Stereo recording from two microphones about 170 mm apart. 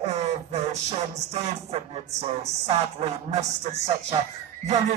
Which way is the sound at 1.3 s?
35° right (ahead or behind).